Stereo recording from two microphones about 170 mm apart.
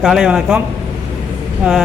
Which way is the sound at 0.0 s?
5° right (ahead or behind).